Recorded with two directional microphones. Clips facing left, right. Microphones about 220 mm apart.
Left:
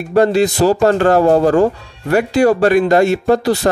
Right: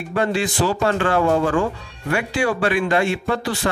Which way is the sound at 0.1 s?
40° left (ahead or behind).